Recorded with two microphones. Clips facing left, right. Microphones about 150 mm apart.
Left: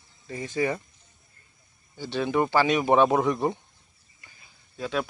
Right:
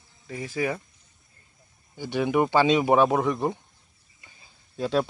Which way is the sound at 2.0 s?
15° right (ahead or behind).